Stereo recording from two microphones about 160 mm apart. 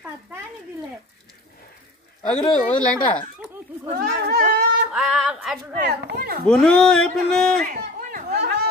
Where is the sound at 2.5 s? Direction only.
10° left (ahead or behind).